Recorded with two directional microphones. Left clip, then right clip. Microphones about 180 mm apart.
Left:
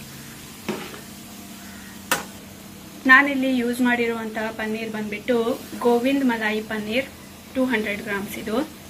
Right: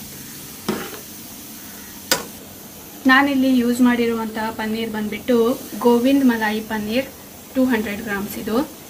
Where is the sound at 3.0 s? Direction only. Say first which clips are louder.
Even; 15° right (ahead or behind).